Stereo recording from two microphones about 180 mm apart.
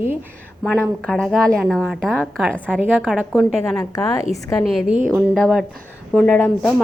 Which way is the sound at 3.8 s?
20° left (ahead or behind).